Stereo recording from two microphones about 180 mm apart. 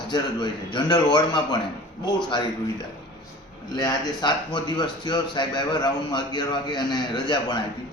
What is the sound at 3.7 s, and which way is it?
A man's voice, 25° left (ahead or behind).